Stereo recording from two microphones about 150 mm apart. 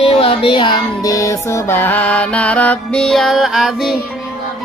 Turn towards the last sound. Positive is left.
turn(degrees=0)  # may be behind; listen again after turning